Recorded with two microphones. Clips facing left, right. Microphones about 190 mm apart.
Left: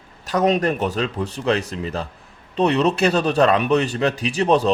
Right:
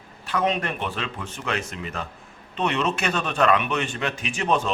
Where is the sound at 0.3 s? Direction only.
40° left (ahead or behind).